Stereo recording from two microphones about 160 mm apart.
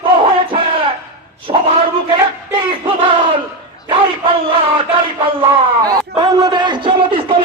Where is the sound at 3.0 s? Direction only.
35° right (ahead or behind).